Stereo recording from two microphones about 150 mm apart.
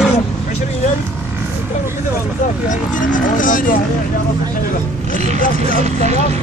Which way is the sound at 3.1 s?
65° left (ahead or behind).